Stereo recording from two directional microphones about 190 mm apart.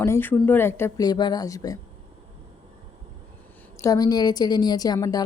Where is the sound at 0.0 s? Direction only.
10° left (ahead or behind).